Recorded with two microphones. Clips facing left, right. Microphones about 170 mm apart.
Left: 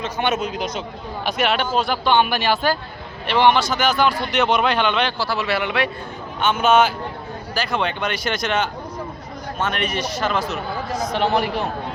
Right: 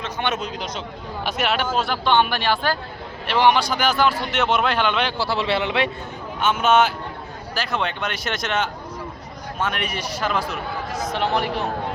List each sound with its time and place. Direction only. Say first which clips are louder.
0.0 s a man's voice: left 3 dB; 5° left (ahead or behind)
1.2 s a man's voice: left 2 dB; centre (ahead or behind)
3.2 s a man's voice: left 1 dB; 5° right (ahead or behind)
5.1 s a man's voice: even; 25° right (ahead or behind)
6.4 s a man's voice: left 1 dB; centre (ahead or behind)